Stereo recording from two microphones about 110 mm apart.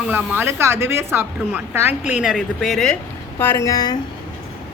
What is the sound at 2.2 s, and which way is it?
Speech, centre (ahead or behind).